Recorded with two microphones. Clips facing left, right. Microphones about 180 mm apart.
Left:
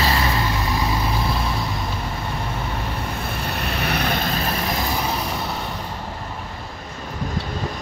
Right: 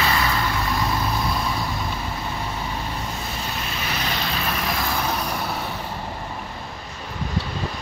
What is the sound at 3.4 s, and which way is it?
Vehicle, 60° left (ahead or behind).